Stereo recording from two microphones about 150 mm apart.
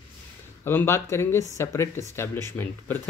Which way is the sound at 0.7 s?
15° left (ahead or behind).